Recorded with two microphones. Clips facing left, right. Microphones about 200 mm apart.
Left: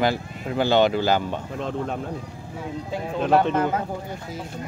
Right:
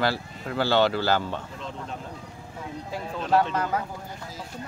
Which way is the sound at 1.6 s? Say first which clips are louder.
Left 9 dB; 60° left (ahead or behind).